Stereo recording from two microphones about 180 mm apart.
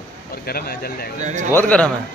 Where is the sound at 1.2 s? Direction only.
40° right (ahead or behind).